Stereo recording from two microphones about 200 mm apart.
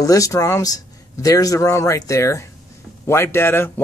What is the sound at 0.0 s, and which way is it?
Speech, 15° left (ahead or behind).